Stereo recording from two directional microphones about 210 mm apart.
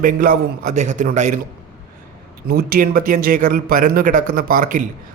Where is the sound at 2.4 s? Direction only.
45° right (ahead or behind).